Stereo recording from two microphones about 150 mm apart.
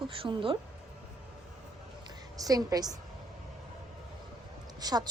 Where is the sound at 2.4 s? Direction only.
25° right (ahead or behind).